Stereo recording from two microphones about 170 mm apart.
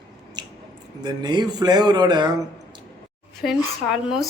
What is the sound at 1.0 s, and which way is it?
Speech, 25° right (ahead or behind).